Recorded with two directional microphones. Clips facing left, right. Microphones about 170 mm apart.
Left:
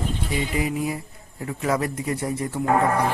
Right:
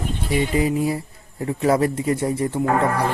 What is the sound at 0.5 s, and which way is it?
Speech, 30° right (ahead or behind).